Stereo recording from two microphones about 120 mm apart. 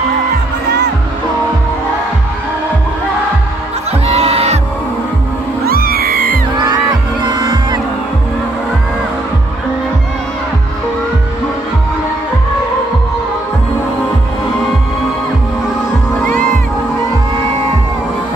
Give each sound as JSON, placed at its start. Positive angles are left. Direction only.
{"t": 4.0, "sound": "music", "side_deg": -60}
{"t": 7.2, "sound": "music", "side_deg": -35}